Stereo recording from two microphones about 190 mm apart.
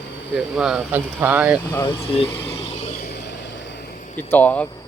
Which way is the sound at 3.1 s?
65° left (ahead or behind).